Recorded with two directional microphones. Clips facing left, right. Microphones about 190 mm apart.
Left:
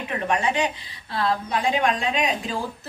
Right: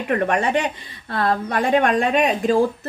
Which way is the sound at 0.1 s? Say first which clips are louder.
Right 5 dB; 60° right (ahead or behind).